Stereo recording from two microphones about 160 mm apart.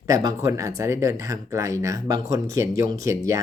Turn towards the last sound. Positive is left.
turn(degrees=-20)  # may be behind; listen again after turning